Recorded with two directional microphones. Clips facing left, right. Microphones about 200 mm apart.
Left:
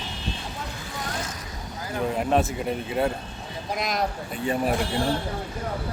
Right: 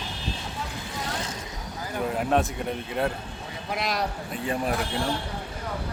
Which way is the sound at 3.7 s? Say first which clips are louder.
Even; 45° left (ahead or behind).